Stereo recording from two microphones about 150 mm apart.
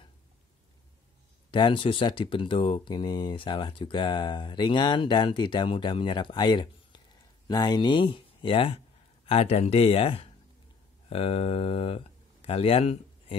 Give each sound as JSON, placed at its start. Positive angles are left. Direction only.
{"t": 1.5, "sound": "speech", "side_deg": 35}